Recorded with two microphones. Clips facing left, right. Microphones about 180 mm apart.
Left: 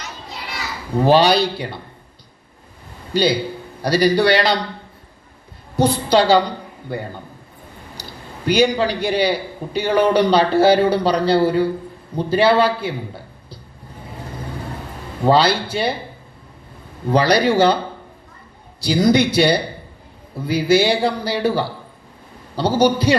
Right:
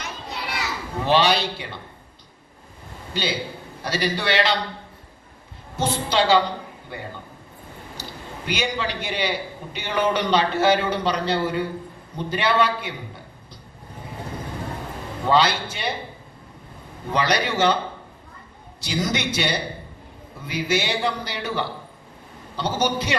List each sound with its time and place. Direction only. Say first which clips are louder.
1.0 s a man's voice: left 6 dB; 35° left (ahead or behind)
3.1 s a man's voice: left 9 dB; 35° left (ahead or behind)
5.7 s a woman's voice: left 7 dB; 35° left (ahead or behind)
8.4 s a man's voice: left 10 dB; 35° left (ahead or behind)
15.2 s a man's voice: left 5 dB; 35° left (ahead or behind)
17.1 s a man's voice: left 8 dB; 35° left (ahead or behind)
18.8 s a man's voice: left 10 dB; 35° left (ahead or behind)